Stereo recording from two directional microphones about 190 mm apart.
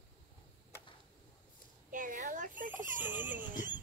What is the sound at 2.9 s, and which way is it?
Speech, 10° right (ahead or behind).